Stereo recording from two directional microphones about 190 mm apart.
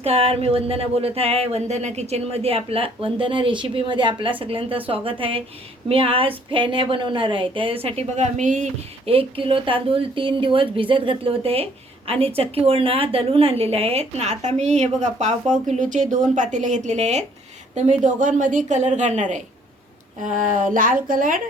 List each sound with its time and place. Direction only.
0.0 s a woman's voice: 30° right (ahead or behind)